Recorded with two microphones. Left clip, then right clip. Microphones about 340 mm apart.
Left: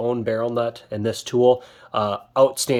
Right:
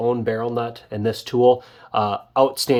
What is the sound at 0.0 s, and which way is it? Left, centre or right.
Speech, centre.